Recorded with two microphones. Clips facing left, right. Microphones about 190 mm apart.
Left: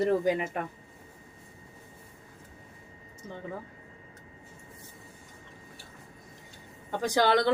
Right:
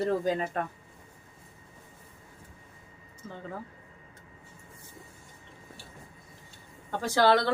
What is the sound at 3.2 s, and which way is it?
Speech, 20° left (ahead or behind).